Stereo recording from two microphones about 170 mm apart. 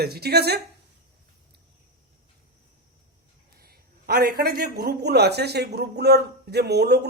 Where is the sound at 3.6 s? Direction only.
65° right (ahead or behind).